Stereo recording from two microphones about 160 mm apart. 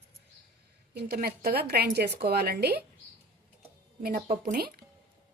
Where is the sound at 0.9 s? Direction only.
85° right.